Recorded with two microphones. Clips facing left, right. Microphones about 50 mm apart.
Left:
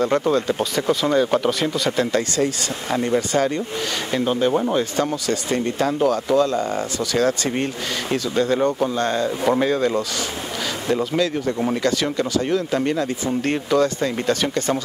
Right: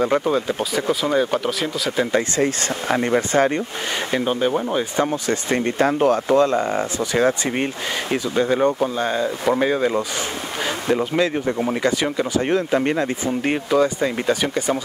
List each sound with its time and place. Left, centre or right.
0.0 s speech: centre
2.1 s speech: right
4.1 s speech: centre
4.6 s speech: centre
4.9 s speech: right
13.5 s speech: centre